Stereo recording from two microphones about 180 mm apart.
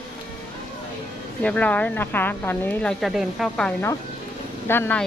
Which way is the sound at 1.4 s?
5° left (ahead or behind).